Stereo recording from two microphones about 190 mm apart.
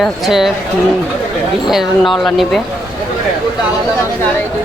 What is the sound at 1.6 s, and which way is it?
Speech, centre (ahead or behind).